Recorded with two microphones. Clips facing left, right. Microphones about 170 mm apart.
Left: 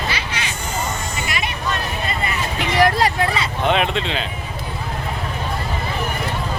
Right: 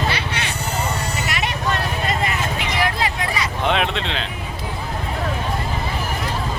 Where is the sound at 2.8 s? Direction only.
40° left (ahead or behind).